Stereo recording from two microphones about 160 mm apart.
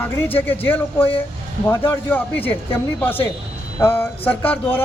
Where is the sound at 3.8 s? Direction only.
15° left (ahead or behind).